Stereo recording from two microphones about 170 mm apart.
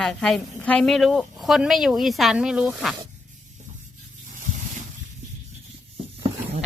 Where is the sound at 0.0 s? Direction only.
5° left (ahead or behind).